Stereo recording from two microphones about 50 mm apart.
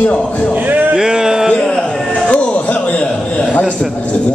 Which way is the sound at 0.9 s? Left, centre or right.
Centre.